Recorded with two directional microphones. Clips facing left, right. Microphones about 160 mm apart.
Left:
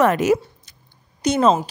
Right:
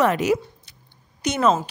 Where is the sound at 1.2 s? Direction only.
30° left (ahead or behind).